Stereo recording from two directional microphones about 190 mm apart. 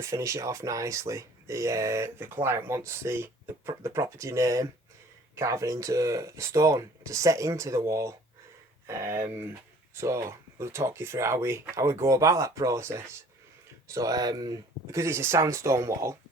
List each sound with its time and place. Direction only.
0.0 s speech: 15° right (ahead or behind)